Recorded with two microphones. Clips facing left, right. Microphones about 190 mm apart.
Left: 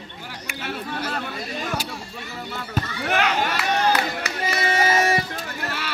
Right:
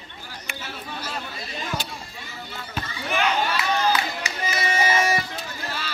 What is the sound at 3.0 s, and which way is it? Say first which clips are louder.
Music: left 1 dB; 70° left (ahead or behind).